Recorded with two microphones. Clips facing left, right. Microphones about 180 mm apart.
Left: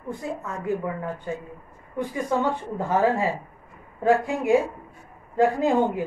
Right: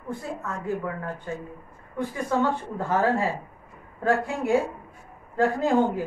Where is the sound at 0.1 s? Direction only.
20° left (ahead or behind).